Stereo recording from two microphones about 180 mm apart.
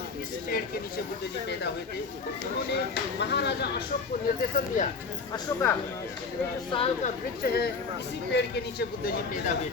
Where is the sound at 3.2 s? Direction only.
70° left (ahead or behind).